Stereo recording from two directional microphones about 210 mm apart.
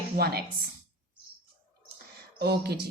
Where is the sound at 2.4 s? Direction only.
50° right (ahead or behind).